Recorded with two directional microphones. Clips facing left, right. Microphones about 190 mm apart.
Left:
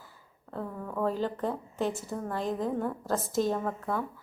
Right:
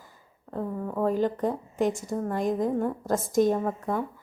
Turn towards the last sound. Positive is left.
turn(degrees=-15)  # may be behind; listen again after turning